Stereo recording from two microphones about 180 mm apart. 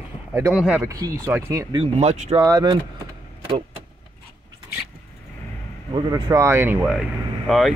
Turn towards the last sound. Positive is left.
turn(degrees=0)  # may be behind; listen again after turning